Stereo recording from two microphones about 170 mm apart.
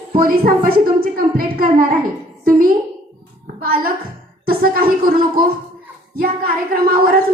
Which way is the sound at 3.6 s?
60° right (ahead or behind).